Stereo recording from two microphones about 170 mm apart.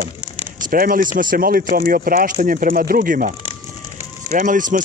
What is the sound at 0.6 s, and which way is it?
Speech, 55° right (ahead or behind).